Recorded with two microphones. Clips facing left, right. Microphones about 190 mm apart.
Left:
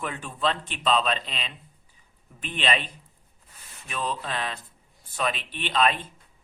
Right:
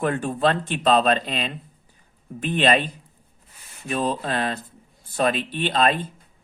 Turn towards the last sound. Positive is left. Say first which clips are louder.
# right 4 dB
turn(degrees=-40)  # may be behind; listen again after turning